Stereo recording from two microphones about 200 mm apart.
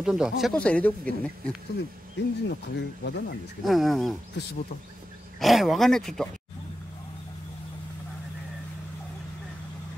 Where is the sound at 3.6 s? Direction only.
Centre (ahead or behind).